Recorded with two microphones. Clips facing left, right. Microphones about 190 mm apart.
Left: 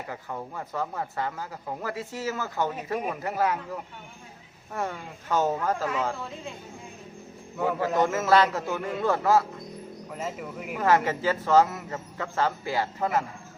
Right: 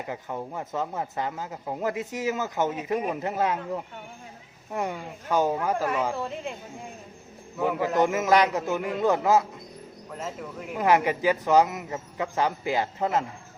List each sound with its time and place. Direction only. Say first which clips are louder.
0.1 s a man's voice: right 3 dB; 20° right (ahead or behind)
7.6 s a man's voice: right 1 dB; 15° right (ahead or behind)
10.1 s speech: even; 5° left (ahead or behind)
10.8 s a man's voice: right 1 dB; 15° right (ahead or behind)